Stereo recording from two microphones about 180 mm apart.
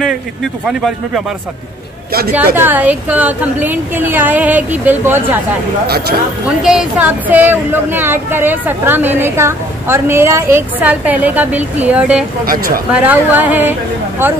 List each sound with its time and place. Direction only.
0.7 s speech: 5° right (ahead or behind)
2.3 s a woman's voice: 10° right (ahead or behind)
6.4 s a woman's voice: 5° right (ahead or behind)
12.4 s speech: 55° right (ahead or behind)
12.9 s a woman's voice: 10° right (ahead or behind)